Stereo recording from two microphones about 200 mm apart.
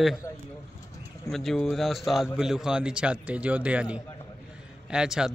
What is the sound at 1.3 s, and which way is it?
A man's voice, centre (ahead or behind).